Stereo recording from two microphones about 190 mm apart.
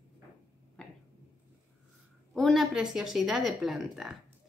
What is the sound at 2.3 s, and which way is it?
A woman's voice, centre (ahead or behind).